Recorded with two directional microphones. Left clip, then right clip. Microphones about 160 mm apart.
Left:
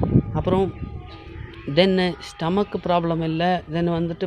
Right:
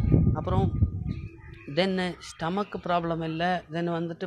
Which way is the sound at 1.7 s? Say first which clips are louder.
Left 8 dB; 40° left (ahead or behind).